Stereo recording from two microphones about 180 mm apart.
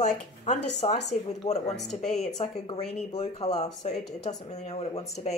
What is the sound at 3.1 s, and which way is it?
Speech, 35° left (ahead or behind).